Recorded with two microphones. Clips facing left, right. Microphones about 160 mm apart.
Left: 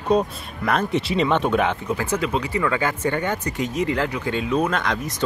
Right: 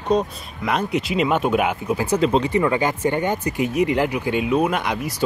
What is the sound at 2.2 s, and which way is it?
Speech, 25° right (ahead or behind).